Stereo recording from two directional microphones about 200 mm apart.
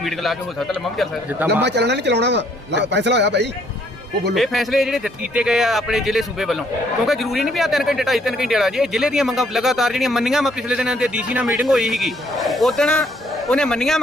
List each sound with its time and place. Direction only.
0.0 s speech: centre (ahead or behind)
1.6 s speech: 60° right (ahead or behind)
4.4 s speech: centre (ahead or behind)